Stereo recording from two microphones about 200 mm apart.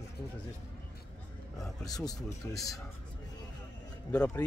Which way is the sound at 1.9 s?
20° left (ahead or behind).